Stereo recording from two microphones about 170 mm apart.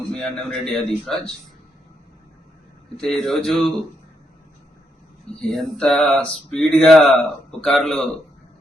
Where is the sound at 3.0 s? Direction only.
Centre (ahead or behind).